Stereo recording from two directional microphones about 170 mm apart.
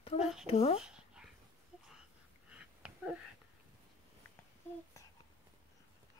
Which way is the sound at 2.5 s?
5° right (ahead or behind).